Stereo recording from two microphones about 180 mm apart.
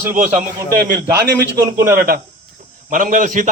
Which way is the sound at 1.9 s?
55° right (ahead or behind).